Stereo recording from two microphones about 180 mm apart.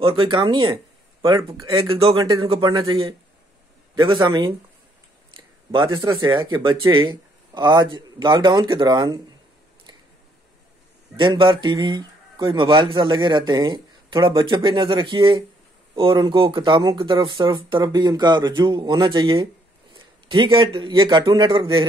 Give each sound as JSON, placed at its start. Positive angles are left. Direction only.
{"t": 0.0, "sound": "speech", "side_deg": -30}
{"t": 5.7, "sound": "speech", "side_deg": -25}
{"t": 11.1, "sound": "speech", "side_deg": -25}